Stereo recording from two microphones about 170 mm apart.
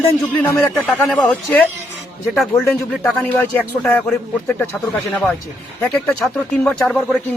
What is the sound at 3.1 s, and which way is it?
Speech, centre (ahead or behind).